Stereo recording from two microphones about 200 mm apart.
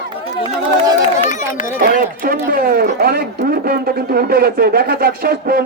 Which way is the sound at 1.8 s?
45° right (ahead or behind).